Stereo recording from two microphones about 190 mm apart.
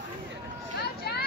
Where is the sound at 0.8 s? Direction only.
55° left (ahead or behind).